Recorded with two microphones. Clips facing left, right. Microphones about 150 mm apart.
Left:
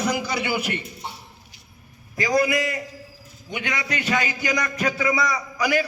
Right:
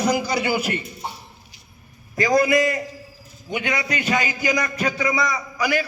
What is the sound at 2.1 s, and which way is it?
Speech, 45° right (ahead or behind).